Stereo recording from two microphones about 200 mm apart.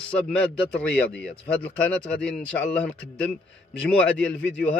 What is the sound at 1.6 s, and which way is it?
A man's voice, 5° left (ahead or behind).